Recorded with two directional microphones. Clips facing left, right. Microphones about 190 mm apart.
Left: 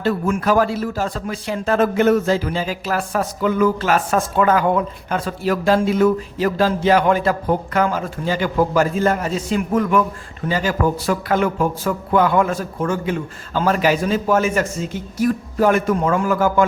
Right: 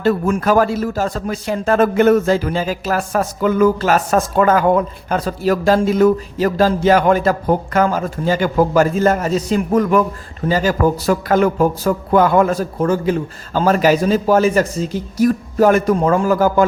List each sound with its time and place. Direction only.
0.0 s a man's voice: 45° right (ahead or behind)